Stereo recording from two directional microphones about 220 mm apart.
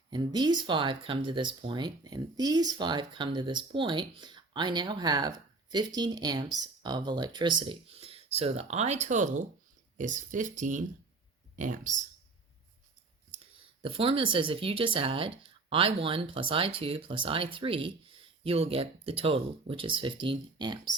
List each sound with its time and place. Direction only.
0.1 s speech: 20° right (ahead or behind)
10.6 s speech: 35° right (ahead or behind)
13.8 s speech: 25° right (ahead or behind)